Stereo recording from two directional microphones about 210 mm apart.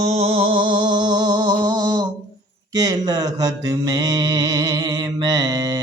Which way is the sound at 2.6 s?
15° right (ahead or behind).